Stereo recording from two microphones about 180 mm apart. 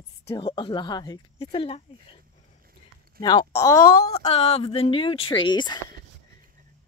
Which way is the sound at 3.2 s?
25° left (ahead or behind).